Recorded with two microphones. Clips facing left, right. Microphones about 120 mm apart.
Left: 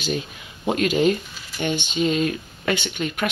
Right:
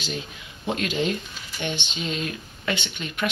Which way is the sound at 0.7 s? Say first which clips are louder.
Left 6 dB; 45° left (ahead or behind).